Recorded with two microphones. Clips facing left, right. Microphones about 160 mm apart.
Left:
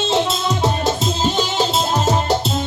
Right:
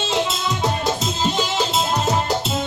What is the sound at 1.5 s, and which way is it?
Music, 40° left (ahead or behind).